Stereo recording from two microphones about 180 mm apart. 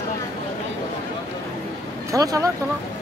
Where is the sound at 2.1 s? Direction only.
20° right (ahead or behind).